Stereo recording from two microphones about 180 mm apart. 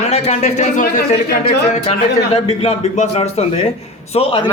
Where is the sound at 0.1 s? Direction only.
40° left (ahead or behind).